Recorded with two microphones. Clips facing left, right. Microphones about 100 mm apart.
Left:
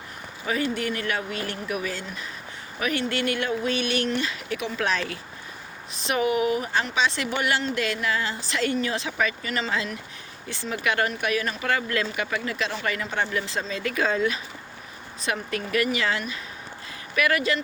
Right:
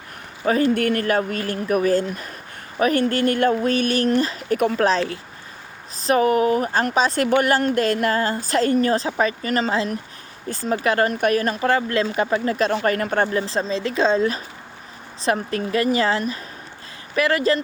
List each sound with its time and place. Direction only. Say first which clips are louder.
0.4 s a woman's voice: right 8 dB; 40° right (ahead or behind)
1.0 s a woman's voice: right 7 dB; 45° right (ahead or behind)
4.9 s a woman's voice: right 6 dB; 30° right (ahead or behind); by 13.3 s 50° right (ahead or behind)
13.3 s speech: right 6 dB; 35° right (ahead or behind)